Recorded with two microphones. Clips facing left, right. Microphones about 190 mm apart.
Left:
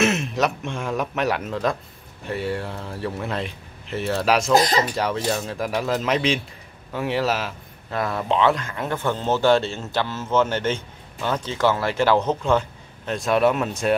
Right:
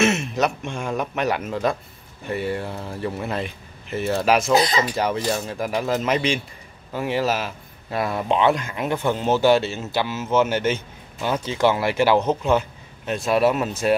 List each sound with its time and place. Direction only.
0.0 s speech: centre (ahead or behind)
4.6 s speech: 40° left (ahead or behind)
4.9 s speech: centre (ahead or behind)
7.9 s speech: 10° right (ahead or behind)